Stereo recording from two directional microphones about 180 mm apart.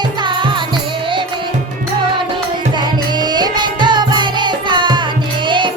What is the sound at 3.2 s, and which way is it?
Music, 25° right (ahead or behind).